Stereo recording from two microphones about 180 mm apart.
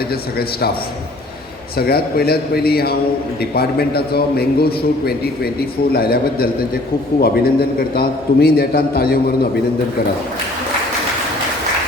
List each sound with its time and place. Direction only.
0.1 s a man's voice: 60° left (ahead or behind)
1.7 s a man's voice: 60° left (ahead or behind)